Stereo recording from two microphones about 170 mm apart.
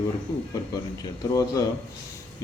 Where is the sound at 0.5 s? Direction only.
20° left (ahead or behind).